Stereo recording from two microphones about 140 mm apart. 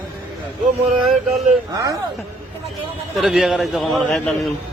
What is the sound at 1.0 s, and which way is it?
Speech, centre (ahead or behind).